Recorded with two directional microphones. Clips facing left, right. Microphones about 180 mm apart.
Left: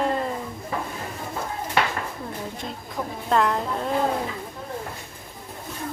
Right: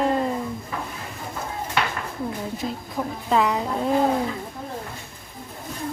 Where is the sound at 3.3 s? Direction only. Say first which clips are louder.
Right 1 dB; 5° right (ahead or behind).